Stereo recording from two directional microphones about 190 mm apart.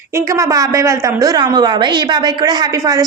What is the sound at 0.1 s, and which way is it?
A woman's voice, 15° right (ahead or behind).